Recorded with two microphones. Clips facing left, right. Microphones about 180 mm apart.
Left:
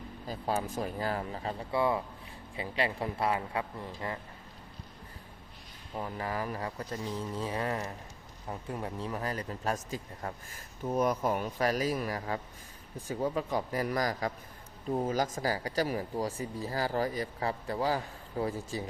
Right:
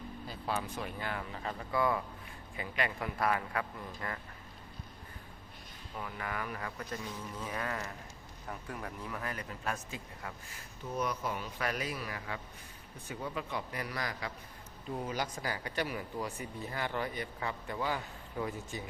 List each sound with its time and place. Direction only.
0.3 s speech: 40° left (ahead or behind); by 4.2 s 25° left (ahead or behind)
6.0 s speech: 30° left (ahead or behind); by 11.4 s 50° left (ahead or behind)
11.5 s speech: 35° left (ahead or behind)